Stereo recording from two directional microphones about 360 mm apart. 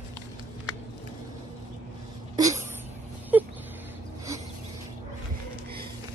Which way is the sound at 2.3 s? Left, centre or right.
Centre.